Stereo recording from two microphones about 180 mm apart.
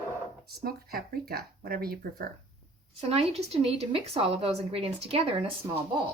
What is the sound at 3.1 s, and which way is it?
Speech, 35° right (ahead or behind).